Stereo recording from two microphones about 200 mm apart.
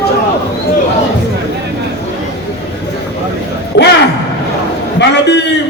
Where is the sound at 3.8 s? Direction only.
60° left (ahead or behind).